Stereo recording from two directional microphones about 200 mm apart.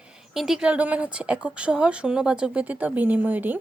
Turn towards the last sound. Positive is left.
turn(degrees=-10)  # may be behind; listen again after turning